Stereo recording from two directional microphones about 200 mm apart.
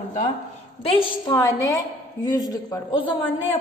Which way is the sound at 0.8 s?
25° left (ahead or behind).